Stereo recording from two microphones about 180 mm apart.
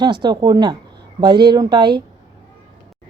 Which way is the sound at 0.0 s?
25° right (ahead or behind).